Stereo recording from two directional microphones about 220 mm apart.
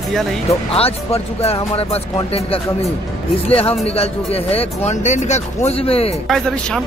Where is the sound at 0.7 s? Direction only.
25° left (ahead or behind).